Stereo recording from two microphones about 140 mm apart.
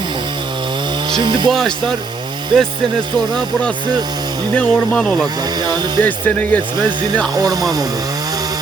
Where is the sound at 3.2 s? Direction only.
30° right (ahead or behind).